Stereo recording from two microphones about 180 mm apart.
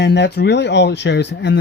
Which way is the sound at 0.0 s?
75° left (ahead or behind).